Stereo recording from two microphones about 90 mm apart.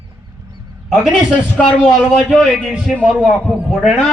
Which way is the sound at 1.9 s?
Centre (ahead or behind).